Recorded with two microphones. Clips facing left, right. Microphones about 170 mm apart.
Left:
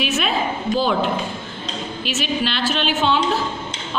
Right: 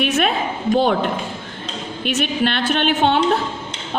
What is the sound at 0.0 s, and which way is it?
A woman's voice, 55° right (ahead or behind).